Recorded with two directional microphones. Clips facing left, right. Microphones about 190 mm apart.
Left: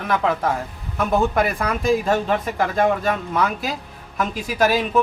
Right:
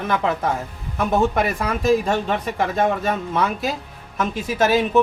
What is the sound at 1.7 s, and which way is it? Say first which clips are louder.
Speech: right 1 dB; centre (ahead or behind).